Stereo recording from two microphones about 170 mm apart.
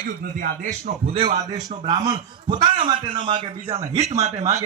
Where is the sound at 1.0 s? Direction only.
35° right (ahead or behind).